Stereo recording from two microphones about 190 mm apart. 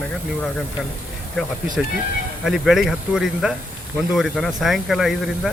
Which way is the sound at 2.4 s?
Centre (ahead or behind).